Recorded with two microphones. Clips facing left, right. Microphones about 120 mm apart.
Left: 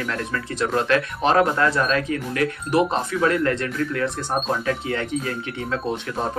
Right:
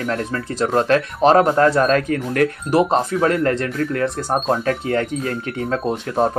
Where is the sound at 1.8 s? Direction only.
50° right (ahead or behind).